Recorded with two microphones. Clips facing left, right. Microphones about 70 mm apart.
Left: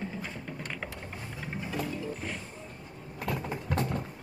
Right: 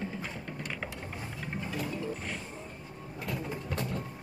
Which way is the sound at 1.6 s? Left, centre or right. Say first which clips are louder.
Left 1 dB; centre.